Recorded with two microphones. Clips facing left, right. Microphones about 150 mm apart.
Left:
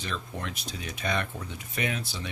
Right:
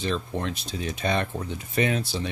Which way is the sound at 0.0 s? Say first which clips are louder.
Right 7 dB; 30° right (ahead or behind).